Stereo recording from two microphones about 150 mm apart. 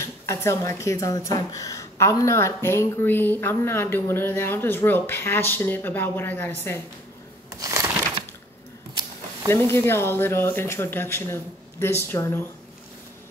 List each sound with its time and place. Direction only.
0.0 s speech: 20° left (ahead or behind)
7.6 s a sound: 20° right (ahead or behind)
9.5 s speech: 15° left (ahead or behind)